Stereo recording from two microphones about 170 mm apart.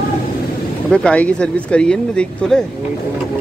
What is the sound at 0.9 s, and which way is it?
Speech, 5° left (ahead or behind).